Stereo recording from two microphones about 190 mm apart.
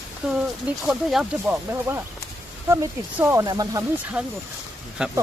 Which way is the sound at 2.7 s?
15° right (ahead or behind).